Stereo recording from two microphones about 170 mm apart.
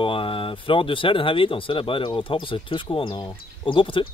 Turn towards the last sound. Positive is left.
turn(degrees=30)  # may be behind; listen again after turning